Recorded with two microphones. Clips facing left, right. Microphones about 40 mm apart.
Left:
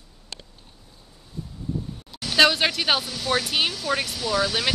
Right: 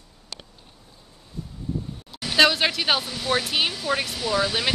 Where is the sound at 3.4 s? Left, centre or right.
Centre.